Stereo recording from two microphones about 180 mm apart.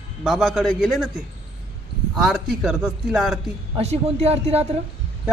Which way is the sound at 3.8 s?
35° right (ahead or behind).